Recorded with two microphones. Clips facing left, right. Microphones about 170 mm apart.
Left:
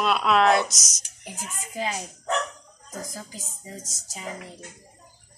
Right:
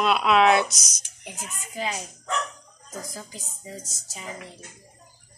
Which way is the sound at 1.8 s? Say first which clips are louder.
Left 1 dB; 35° left (ahead or behind).